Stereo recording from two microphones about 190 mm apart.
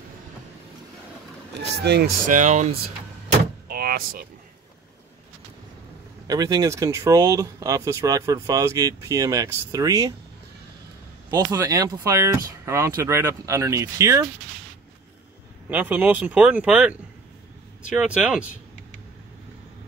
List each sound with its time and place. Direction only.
1.5 s speech: 60° right (ahead or behind)
2.3 s speech: 40° right (ahead or behind)
3.3 s vehicle: 50° right (ahead or behind)
6.2 s speech: 20° right (ahead or behind)
11.2 s speech: 15° right (ahead or behind)
15.7 s speech: 10° right (ahead or behind)